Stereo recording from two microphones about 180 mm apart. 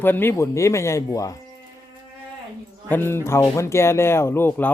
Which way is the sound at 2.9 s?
10° left (ahead or behind).